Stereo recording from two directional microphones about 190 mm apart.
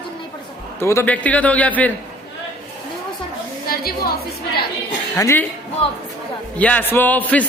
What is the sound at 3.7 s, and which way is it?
Speech, 50° left (ahead or behind).